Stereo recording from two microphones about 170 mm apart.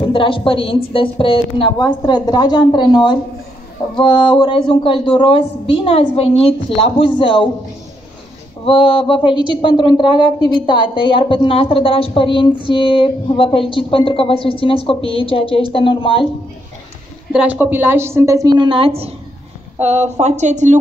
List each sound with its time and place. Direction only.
0.1 s a woman's voice: 30° left (ahead or behind)
8.6 s a woman's voice: 30° left (ahead or behind)
17.3 s a woman's voice: 10° right (ahead or behind); by 20.7 s 45° right (ahead or behind)